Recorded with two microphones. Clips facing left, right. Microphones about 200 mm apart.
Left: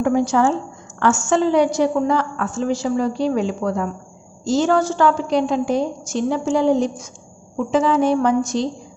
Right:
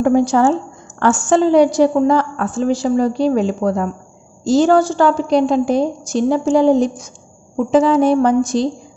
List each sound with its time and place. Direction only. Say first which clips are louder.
0.0 s a woman's voice: right 4 dB; 35° right (ahead or behind)